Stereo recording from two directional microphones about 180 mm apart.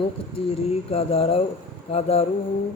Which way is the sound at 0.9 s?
30° left (ahead or behind).